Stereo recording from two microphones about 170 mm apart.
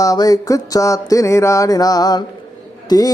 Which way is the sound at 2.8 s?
20° left (ahead or behind).